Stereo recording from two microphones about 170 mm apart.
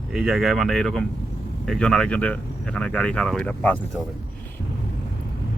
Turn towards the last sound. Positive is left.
turn(degrees=10)  # may be behind; listen again after turning